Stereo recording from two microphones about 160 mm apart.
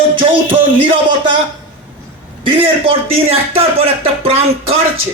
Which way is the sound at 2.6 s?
35° right (ahead or behind).